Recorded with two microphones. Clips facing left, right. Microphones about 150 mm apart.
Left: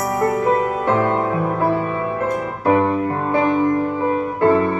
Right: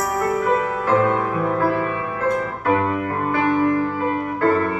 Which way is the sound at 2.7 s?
25° left (ahead or behind).